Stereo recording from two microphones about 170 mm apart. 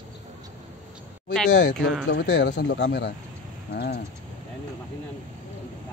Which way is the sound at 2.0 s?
90° left.